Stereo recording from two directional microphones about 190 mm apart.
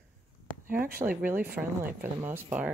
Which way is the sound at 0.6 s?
50° right (ahead or behind).